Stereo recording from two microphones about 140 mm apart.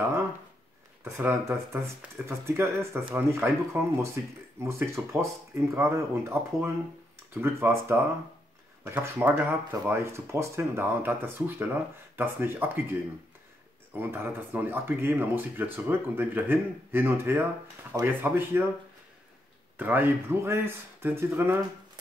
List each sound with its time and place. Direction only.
1.0 s speech: 20° right (ahead or behind)
13.9 s speech: 15° right (ahead or behind)
19.8 s speech: 15° right (ahead or behind)